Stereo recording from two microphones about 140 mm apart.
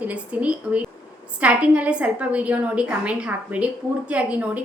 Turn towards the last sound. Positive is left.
turn(degrees=-10)  # may be behind; listen again after turning